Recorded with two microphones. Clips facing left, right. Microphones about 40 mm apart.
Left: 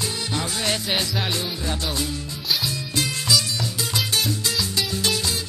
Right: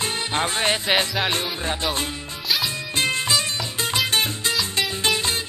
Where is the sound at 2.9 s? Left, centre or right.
Right.